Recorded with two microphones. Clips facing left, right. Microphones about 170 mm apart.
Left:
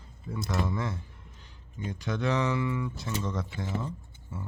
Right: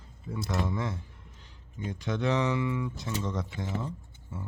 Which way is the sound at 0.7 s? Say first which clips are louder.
Even; 20° right (ahead or behind).